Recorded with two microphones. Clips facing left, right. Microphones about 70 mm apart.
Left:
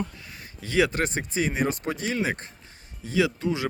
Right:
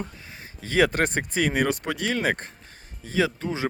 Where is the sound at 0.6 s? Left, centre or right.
Right.